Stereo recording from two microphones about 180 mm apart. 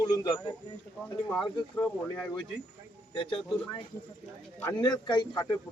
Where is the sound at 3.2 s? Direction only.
30° left (ahead or behind).